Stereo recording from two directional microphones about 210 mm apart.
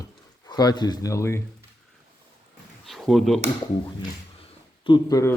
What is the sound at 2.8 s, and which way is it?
Speech, centre (ahead or behind).